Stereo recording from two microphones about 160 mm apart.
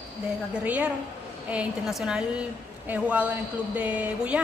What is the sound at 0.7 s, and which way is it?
A woman's voice, 10° right (ahead or behind).